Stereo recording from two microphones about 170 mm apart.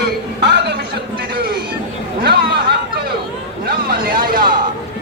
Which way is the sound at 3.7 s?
60° right (ahead or behind).